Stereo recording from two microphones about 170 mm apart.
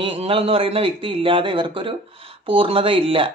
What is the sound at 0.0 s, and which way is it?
Speech, 35° right (ahead or behind).